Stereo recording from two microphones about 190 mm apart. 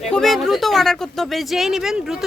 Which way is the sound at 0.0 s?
Centre (ahead or behind).